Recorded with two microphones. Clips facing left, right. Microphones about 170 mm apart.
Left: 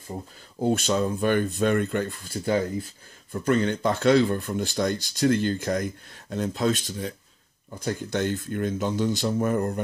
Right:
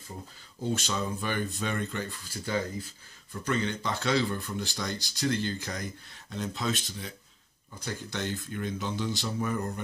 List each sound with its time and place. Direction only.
0.6 s speech: 55° left (ahead or behind)